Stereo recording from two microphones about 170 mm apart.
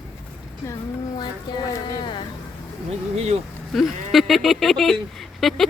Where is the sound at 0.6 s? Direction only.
20° left (ahead or behind).